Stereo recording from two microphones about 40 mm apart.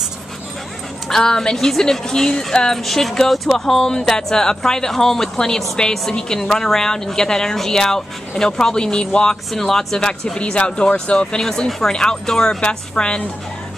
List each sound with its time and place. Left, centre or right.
1.0 s speech: centre
2.8 s speech: centre; by 9.4 s left
9.5 s speech: centre; by 11.2 s left
11.4 s a woman's voice: centre